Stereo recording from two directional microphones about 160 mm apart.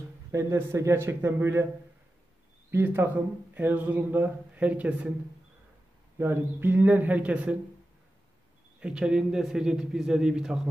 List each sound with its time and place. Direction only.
0.3 s a man's voice: 15° right (ahead or behind)
2.7 s a man's voice: 15° right (ahead or behind)
6.1 s a man's voice: 15° right (ahead or behind)
8.7 s a man's voice: 5° right (ahead or behind)